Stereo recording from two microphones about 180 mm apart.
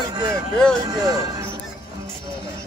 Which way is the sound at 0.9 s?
20° right (ahead or behind).